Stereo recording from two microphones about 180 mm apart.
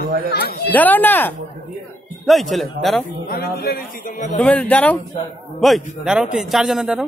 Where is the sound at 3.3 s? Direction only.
60° left (ahead or behind).